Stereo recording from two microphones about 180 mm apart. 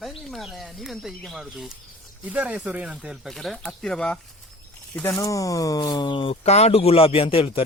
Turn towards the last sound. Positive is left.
turn(degrees=30)  # may be behind; listen again after turning